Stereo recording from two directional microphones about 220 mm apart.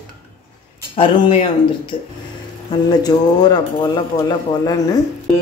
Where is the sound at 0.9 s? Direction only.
25° left (ahead or behind).